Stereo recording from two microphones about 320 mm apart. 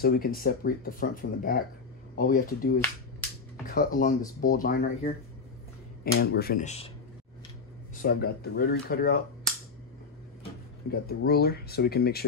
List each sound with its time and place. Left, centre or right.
0.0 s speech: left
6.1 s speech: left
8.0 s speech: left
10.9 s speech: left